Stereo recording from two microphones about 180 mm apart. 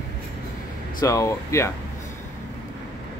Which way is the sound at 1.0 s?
15° left (ahead or behind).